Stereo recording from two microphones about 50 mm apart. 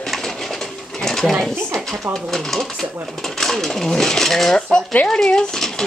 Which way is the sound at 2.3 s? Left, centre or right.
Centre.